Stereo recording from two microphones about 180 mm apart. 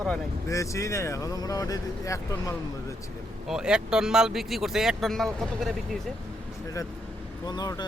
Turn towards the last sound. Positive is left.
turn(degrees=20)  # may be behind; listen again after turning